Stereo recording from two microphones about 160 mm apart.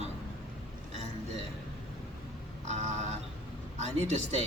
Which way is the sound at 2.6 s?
45° right (ahead or behind).